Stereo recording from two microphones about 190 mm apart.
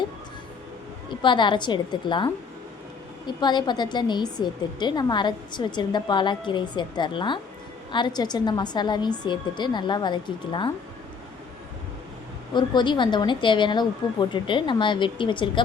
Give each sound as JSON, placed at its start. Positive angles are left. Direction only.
{"t": 1.2, "sound": "a woman's voice", "side_deg": 25}
{"t": 12.5, "sound": "a woman's voice", "side_deg": 25}